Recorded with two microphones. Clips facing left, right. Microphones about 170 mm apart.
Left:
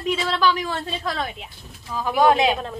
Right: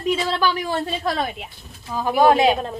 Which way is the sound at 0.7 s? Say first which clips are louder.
Right 4 dB; 40° right (ahead or behind).